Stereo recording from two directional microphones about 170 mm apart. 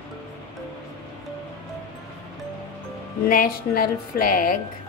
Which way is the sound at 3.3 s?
60° left (ahead or behind).